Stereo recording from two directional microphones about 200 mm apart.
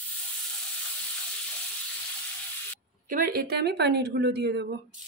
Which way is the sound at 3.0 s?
45° right (ahead or behind).